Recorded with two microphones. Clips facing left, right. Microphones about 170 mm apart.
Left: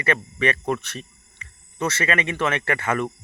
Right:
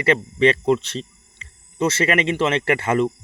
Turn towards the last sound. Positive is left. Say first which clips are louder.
# right 5 dB
turn(degrees=-25)  # may be behind; listen again after turning